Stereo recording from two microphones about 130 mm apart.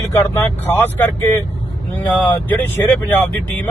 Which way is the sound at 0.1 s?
15° left (ahead or behind).